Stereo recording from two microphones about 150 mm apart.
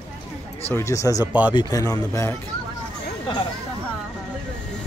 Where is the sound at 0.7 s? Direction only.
20° left (ahead or behind).